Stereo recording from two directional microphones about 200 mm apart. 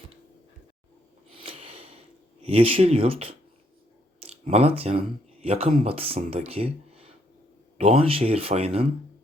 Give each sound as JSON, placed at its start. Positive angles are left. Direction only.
{"t": 1.3, "sound": "a sound", "side_deg": -30}
{"t": 2.4, "sound": "speech", "side_deg": -30}
{"t": 7.8, "sound": "speech", "side_deg": -30}